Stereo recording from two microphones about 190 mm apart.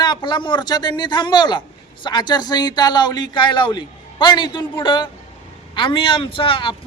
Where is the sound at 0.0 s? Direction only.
25° left (ahead or behind).